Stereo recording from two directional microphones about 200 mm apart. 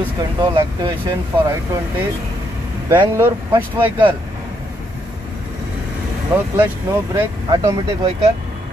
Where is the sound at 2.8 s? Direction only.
20° right (ahead or behind).